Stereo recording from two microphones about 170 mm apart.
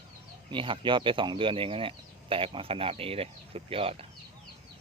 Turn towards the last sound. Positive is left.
turn(degrees=-35)  # may be behind; listen again after turning